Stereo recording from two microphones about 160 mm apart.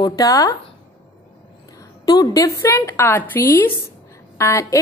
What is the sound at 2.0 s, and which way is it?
A woman's voice, 20° left (ahead or behind).